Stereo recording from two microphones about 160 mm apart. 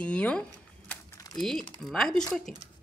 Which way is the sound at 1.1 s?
20° left (ahead or behind).